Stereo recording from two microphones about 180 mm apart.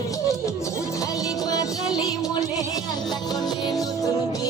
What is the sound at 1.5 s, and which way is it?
Music, 20° left (ahead or behind).